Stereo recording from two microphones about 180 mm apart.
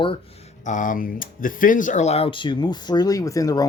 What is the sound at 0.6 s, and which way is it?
Speech, 45° left (ahead or behind).